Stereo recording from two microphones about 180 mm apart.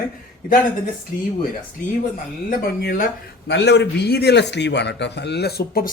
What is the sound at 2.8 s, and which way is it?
Speech, 60° left (ahead or behind).